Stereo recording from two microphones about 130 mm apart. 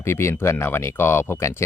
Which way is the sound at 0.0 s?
20° left (ahead or behind).